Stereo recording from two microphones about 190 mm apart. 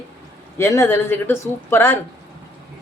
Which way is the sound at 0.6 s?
15° left (ahead or behind).